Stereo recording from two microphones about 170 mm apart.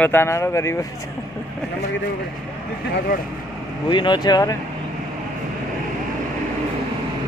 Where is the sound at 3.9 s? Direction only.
25° left (ahead or behind).